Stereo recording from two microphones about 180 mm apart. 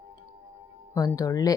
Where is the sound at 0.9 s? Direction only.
20° left (ahead or behind).